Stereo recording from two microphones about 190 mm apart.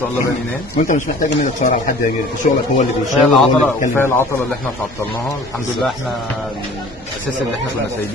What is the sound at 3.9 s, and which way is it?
Speech, 10° left (ahead or behind).